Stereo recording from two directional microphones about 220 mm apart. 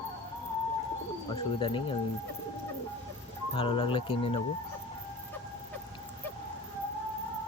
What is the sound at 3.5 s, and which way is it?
Speech, 25° left (ahead or behind).